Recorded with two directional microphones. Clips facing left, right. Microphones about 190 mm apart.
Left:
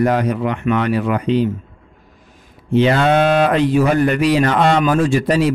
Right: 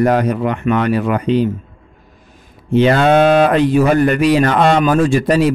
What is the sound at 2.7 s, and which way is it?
Speech, 50° right (ahead or behind).